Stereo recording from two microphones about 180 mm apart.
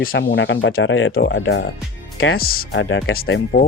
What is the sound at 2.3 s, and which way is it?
Speech, 55° left (ahead or behind).